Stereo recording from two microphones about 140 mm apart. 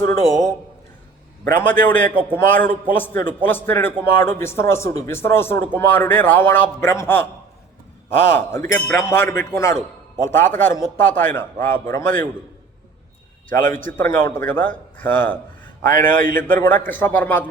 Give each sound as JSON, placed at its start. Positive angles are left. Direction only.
{"t": 0.0, "sound": "a man's voice", "side_deg": 25}
{"t": 1.5, "sound": "a man's voice", "side_deg": 15}
{"t": 8.5, "sound": "a man's voice", "side_deg": 15}
{"t": 13.5, "sound": "a man's voice", "side_deg": 15}